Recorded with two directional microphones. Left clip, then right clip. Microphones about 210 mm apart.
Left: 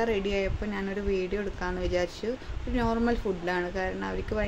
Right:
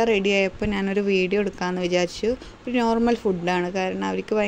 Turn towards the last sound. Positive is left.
turn(degrees=-40)  # may be behind; listen again after turning